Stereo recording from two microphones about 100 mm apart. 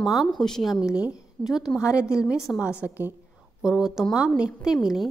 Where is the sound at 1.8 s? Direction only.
30° left (ahead or behind).